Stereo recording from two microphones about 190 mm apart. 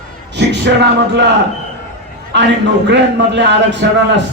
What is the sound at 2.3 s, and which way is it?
A man's voice, 65° right (ahead or behind).